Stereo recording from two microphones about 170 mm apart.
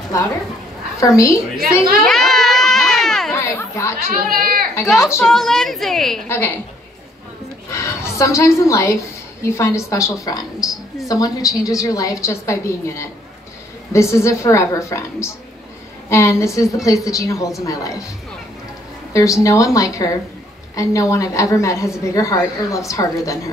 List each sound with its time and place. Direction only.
0.9 s a woman's voice: 15° left (ahead or behind)
2.0 s baby cry: centre (ahead or behind)
3.3 s chatter: 15° left (ahead or behind)
4.2 s speech: 60° right (ahead or behind)
4.8 s a woman's voice: centre (ahead or behind)
6.2 s a woman's voice: 15° left (ahead or behind)
7.7 s a sound: 15° left (ahead or behind)
9.4 s a woman's voice: 15° left (ahead or behind)
19.1 s a woman's voice: 20° left (ahead or behind)